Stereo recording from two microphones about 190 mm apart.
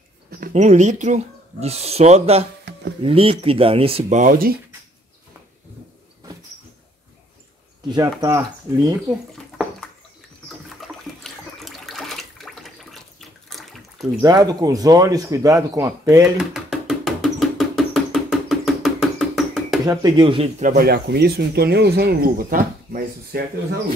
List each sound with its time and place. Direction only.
0.3 s speech: 45° right (ahead or behind)
7.9 s speech: 20° right (ahead or behind)
10.5 s water: centre (ahead or behind)
14.2 s speech: 20° right (ahead or behind)
16.3 s a sound: centre (ahead or behind)
19.9 s speech: 25° right (ahead or behind)
20.6 s speech: 50° right (ahead or behind)